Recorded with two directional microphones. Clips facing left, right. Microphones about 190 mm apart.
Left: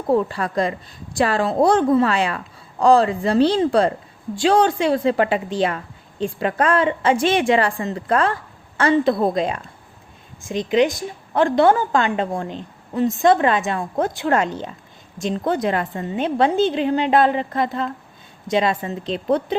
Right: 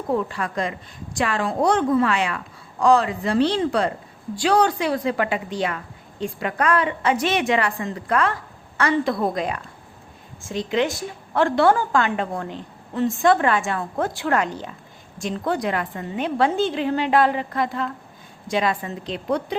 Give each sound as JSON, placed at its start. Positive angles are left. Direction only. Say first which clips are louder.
{"t": 0.1, "sound": "a woman's voice", "louder": "left 5 dB", "side_deg": 35}